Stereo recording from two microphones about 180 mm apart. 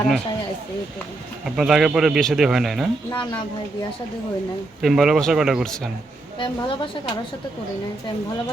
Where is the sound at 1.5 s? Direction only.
5° right (ahead or behind).